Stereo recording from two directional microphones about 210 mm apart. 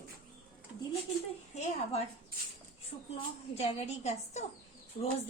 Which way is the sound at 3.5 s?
30° left (ahead or behind).